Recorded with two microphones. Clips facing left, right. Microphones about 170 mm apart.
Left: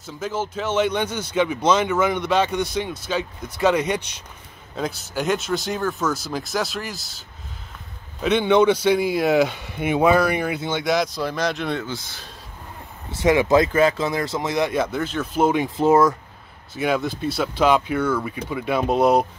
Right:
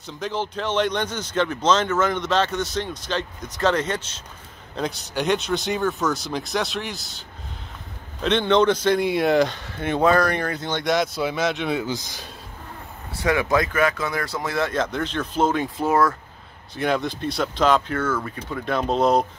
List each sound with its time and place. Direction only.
0.0 s speech: 5° left (ahead or behind)
4.7 s speech: centre (ahead or behind)
13.2 s speech: 20° left (ahead or behind)
16.7 s speech: 5° left (ahead or behind)